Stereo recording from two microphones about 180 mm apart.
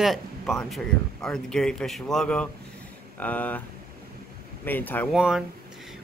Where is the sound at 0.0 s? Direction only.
Centre (ahead or behind).